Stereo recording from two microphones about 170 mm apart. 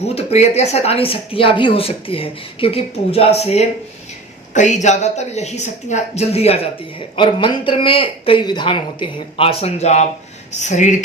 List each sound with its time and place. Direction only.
0.1 s speech: 35° left (ahead or behind)